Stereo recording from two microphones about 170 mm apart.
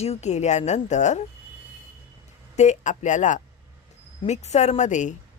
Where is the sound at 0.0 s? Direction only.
40° left (ahead or behind).